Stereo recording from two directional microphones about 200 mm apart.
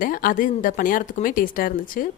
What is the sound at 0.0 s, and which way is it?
Speech, 45° left (ahead or behind).